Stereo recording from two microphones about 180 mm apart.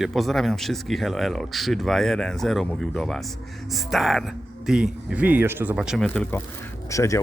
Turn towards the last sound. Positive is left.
turn(degrees=15)  # may be behind; listen again after turning